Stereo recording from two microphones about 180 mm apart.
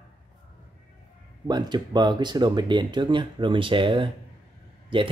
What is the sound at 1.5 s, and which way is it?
Speech, 25° right (ahead or behind).